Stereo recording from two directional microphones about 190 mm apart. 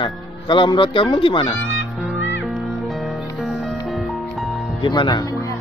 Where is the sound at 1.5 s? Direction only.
90° left.